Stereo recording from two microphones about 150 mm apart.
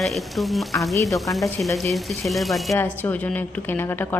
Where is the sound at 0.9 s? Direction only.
20° left (ahead or behind).